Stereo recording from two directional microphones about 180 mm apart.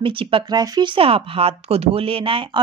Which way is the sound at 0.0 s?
30° right (ahead or behind).